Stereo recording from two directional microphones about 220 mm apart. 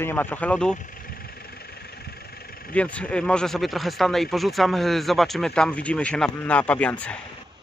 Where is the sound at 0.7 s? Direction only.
40° left (ahead or behind).